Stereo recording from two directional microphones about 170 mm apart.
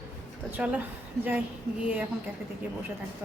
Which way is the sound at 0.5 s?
10° right (ahead or behind).